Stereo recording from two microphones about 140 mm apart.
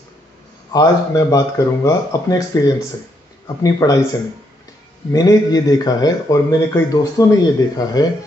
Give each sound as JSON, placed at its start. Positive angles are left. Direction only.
{"t": 0.7, "sound": "speech", "side_deg": 25}
{"t": 5.1, "sound": "speech", "side_deg": 30}